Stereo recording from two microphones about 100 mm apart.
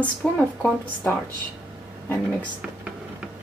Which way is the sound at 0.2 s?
20° left (ahead or behind).